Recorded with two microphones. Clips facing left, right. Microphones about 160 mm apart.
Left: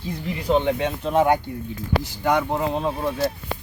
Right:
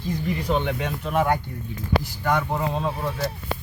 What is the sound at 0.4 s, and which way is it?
Speech, 30° left (ahead or behind).